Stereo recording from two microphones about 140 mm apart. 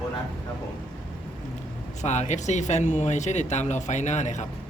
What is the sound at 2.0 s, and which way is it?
Speech, 55° left (ahead or behind).